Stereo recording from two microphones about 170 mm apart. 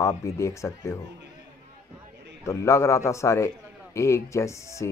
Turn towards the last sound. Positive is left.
turn(degrees=15)  # may be behind; listen again after turning